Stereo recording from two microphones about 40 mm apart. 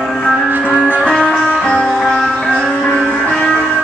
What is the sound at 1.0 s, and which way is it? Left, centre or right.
Music, centre.